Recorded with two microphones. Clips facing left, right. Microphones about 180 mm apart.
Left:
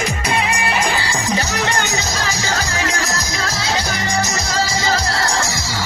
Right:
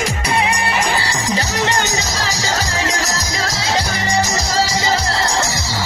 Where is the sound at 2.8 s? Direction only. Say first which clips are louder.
Right 1 dB; 25° right (ahead or behind).